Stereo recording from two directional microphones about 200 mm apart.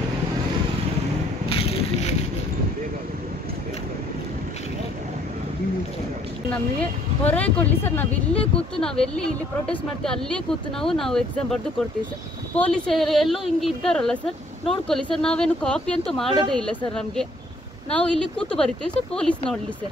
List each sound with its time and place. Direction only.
1.5 s a sound: 30° left (ahead or behind)
6.8 s speech: 5° left (ahead or behind)
16.3 s a woman's voice: 20° right (ahead or behind)
16.6 s speech: 5° left (ahead or behind)